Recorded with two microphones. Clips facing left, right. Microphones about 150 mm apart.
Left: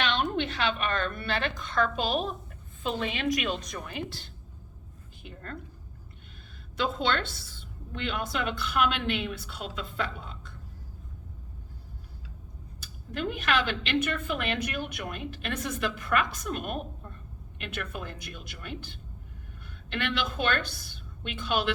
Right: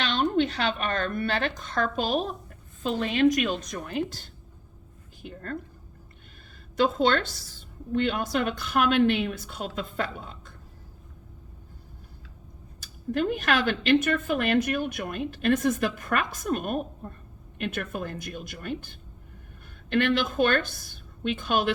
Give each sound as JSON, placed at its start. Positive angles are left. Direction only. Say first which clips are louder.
{"t": 0.0, "sound": "a woman's voice", "louder": "right 4 dB", "side_deg": -35}
{"t": 6.7, "sound": "a woman's voice", "louder": "right 6 dB", "side_deg": -45}
{"t": 12.8, "sound": "a woman's voice", "louder": "right 6 dB", "side_deg": -45}